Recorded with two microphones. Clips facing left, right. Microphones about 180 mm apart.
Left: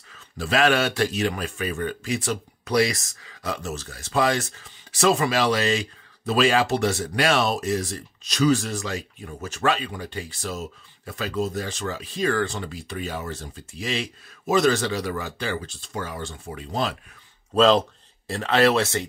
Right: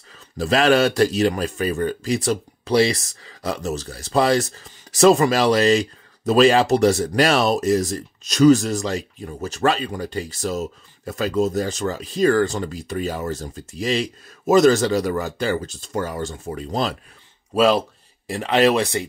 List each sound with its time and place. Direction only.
0.4 s speech: 35° right (ahead or behind)
17.6 s speech: 10° right (ahead or behind)